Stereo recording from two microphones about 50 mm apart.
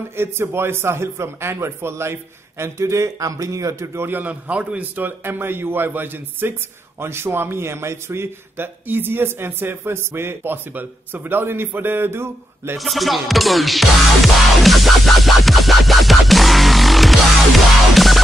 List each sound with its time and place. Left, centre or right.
0.1 s a man's voice: right
2.6 s a man's voice: right
4.0 s a man's voice: right
4.9 s speech: right
7.0 s a man's voice: right
8.8 s speech: right
12.7 s music: centre